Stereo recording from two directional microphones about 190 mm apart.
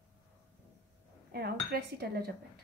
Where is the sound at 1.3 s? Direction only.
55° right (ahead or behind).